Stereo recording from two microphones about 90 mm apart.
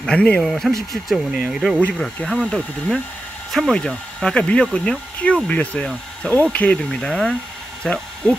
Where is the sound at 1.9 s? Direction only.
10° left (ahead or behind).